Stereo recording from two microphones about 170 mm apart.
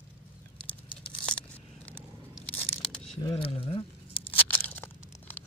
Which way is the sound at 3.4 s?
35° left (ahead or behind).